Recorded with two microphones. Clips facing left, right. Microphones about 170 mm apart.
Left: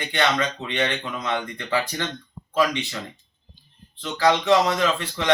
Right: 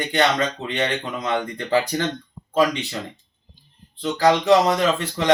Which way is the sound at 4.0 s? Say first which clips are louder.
Right 3 dB; 35° right (ahead or behind).